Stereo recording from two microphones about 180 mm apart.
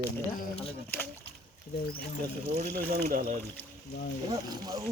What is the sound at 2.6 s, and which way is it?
Speech, 55° right (ahead or behind).